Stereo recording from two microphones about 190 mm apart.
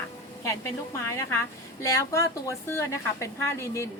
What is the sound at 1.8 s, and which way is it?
Speech, 15° left (ahead or behind).